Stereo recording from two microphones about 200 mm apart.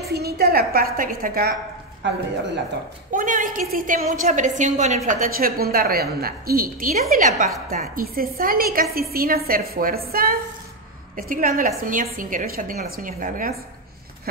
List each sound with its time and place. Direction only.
0.1 s a woman's voice: 50° right (ahead or behind)
2.0 s speech: 60° right (ahead or behind)
3.1 s a woman's voice: 40° right (ahead or behind)